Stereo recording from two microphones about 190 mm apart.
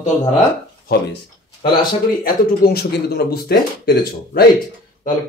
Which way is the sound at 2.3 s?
55° left (ahead or behind).